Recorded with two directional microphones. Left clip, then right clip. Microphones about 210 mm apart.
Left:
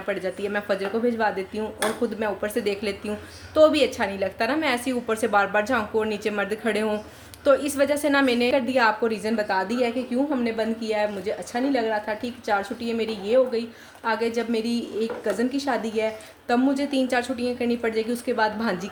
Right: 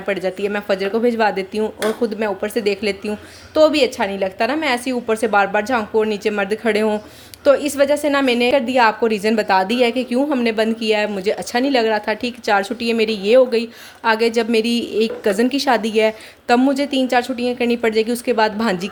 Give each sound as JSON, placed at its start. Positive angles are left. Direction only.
{"t": 0.1, "sound": "a woman's voice", "side_deg": -30}